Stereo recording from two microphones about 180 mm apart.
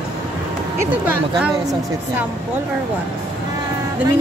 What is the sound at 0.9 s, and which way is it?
Speech, 10° right (ahead or behind).